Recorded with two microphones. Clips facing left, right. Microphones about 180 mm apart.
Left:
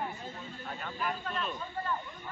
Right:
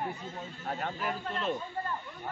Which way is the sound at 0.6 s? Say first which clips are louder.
Right 7 dB; 60° right (ahead or behind).